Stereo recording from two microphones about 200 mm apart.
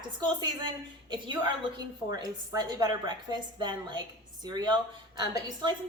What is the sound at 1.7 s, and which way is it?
A woman's voice, 20° right (ahead or behind).